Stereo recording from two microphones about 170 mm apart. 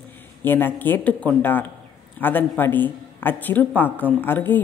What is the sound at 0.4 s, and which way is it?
A woman's voice, 10° left (ahead or behind).